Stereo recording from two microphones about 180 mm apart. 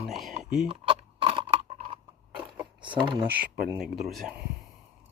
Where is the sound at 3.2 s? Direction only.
10° right (ahead or behind).